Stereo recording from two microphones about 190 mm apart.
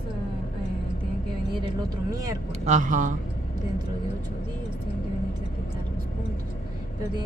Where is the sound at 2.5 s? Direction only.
40° right (ahead or behind).